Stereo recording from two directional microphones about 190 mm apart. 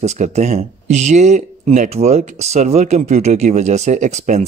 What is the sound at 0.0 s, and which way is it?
Speech, 35° right (ahead or behind).